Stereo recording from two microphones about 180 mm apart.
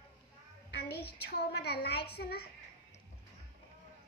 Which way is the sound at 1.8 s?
65° left (ahead or behind).